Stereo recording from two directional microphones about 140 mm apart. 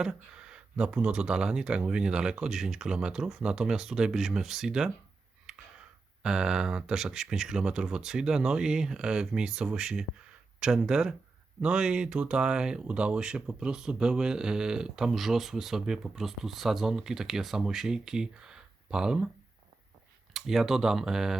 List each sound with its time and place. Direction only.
0.0 s speech: 5° right (ahead or behind)
5.5 s a sound: 5° right (ahead or behind)
6.2 s speech: 5° right (ahead or behind)
20.3 s speech: centre (ahead or behind)